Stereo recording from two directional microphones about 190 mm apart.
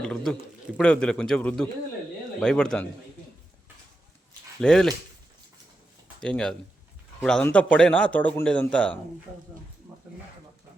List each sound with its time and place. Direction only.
0.0 s speech: 5° left (ahead or behind)
4.6 s speech: 5° left (ahead or behind)
6.1 s speech: 5° left (ahead or behind)